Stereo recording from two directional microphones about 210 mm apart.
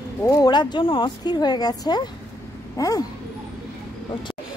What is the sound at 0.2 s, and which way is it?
Speech, 20° left (ahead or behind).